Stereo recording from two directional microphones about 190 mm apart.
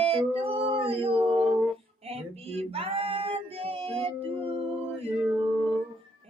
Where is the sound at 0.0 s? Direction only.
30° right (ahead or behind).